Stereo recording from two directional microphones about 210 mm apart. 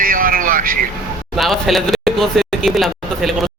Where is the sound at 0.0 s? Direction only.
45° right (ahead or behind).